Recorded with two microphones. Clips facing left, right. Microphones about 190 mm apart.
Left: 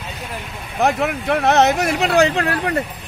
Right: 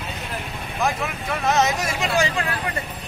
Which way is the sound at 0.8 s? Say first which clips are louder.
Left 7 dB; 65° left (ahead or behind).